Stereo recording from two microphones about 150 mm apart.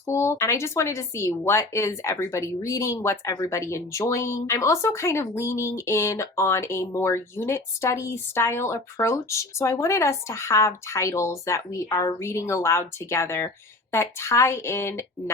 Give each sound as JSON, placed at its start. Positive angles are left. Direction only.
{"t": 0.0, "sound": "a woman's voice", "side_deg": 15}